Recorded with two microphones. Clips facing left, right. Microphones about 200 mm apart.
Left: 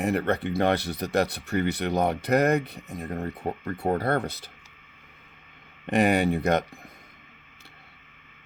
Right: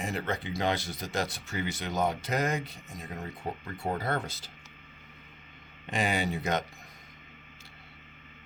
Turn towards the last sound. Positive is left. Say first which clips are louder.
# left 7 dB
turn(degrees=60)  # may be behind; listen again after turning